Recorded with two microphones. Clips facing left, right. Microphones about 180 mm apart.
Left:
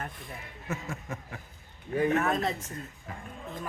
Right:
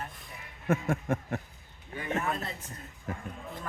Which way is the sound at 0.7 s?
50° right (ahead or behind).